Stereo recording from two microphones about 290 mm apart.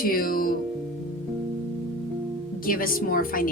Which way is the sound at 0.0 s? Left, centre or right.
Left.